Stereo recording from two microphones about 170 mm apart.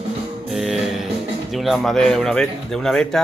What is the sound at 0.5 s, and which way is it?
Music, centre (ahead or behind).